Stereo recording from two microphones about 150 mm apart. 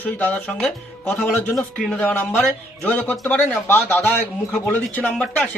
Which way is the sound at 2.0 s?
15° left (ahead or behind).